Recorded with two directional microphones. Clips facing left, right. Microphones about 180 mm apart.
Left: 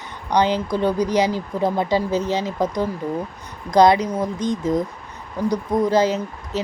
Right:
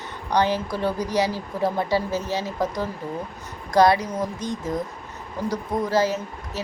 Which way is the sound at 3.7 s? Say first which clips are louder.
Left 3 dB; 20° left (ahead or behind).